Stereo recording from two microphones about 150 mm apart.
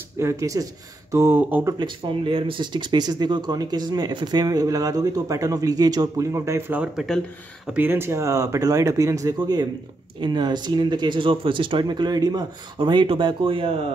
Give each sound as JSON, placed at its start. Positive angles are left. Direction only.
{"t": 0.2, "sound": "speech", "side_deg": -20}
{"t": 1.8, "sound": "speech", "side_deg": -35}
{"t": 6.8, "sound": "speech", "side_deg": -5}